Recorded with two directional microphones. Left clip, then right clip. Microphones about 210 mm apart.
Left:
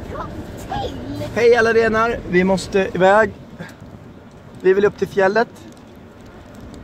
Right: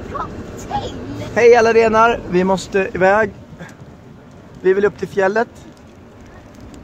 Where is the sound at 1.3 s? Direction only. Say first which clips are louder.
Right 3 dB; 15° right (ahead or behind).